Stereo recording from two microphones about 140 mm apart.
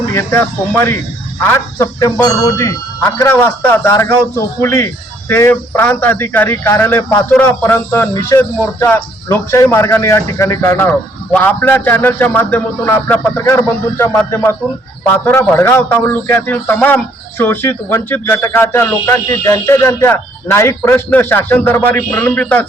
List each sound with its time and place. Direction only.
0.1 s speech: 20° left (ahead or behind)